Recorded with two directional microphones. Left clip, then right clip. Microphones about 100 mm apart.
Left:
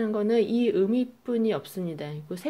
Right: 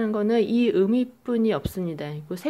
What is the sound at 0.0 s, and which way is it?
Speech, 20° right (ahead or behind).